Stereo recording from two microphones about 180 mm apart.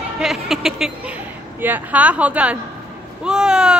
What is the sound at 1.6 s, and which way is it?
A woman's voice, 10° right (ahead or behind).